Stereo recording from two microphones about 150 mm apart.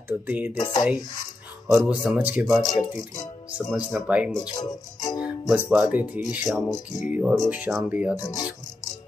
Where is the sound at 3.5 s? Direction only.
5° right (ahead or behind).